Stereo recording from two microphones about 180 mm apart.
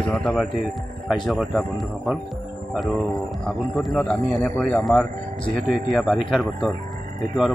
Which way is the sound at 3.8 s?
Centre (ahead or behind).